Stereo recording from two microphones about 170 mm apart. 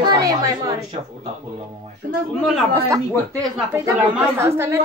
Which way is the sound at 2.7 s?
15° right (ahead or behind).